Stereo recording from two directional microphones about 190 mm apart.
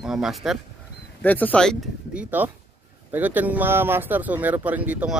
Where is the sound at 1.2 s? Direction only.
10° left (ahead or behind).